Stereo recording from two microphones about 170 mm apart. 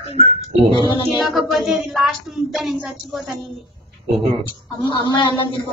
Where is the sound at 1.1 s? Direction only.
Centre (ahead or behind).